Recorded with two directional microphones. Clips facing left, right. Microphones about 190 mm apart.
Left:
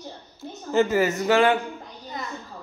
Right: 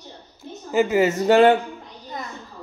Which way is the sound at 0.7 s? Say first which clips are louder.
Right 2 dB; 15° right (ahead or behind).